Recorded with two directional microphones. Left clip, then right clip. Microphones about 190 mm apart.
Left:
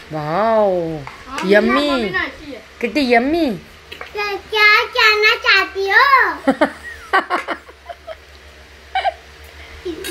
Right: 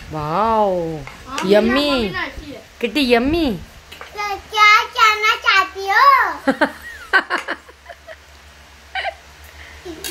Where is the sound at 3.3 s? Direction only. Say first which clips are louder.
Left 1 dB; 40° right (ahead or behind).